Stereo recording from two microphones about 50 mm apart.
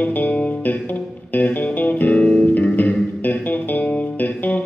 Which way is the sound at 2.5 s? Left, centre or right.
Left.